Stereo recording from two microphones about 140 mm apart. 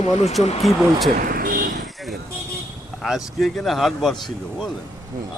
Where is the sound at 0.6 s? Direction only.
Centre (ahead or behind).